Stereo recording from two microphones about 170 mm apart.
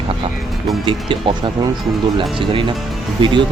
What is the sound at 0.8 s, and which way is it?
Speech, 30° right (ahead or behind).